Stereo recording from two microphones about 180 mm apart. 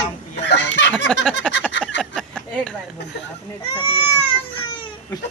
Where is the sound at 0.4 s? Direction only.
75° left (ahead or behind).